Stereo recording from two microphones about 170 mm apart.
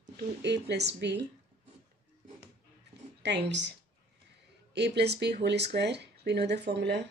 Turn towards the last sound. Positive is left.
turn(degrees=-85)